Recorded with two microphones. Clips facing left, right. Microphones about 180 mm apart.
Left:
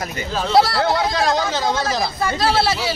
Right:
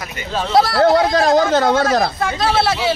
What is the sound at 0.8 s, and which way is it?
Speech, 50° right (ahead or behind).